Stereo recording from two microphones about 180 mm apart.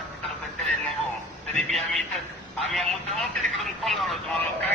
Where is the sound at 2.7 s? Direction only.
Centre (ahead or behind).